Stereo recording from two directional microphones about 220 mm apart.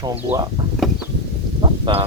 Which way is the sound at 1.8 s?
25° right (ahead or behind).